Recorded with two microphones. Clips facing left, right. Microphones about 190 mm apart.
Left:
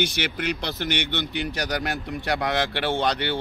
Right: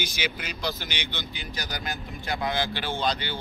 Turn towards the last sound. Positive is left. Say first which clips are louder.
# left 5 dB
turn(degrees=70)  # may be behind; listen again after turning